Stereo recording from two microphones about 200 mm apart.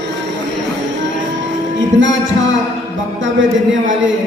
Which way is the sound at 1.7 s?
65° right (ahead or behind).